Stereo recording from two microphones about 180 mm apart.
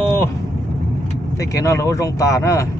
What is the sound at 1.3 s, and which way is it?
Speech, 20° left (ahead or behind).